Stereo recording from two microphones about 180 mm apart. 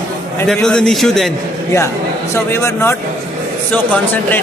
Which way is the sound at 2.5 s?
15° left (ahead or behind).